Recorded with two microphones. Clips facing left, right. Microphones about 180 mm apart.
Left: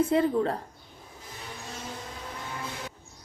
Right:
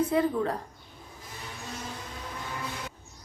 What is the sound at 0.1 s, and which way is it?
Speech, 25° left (ahead or behind).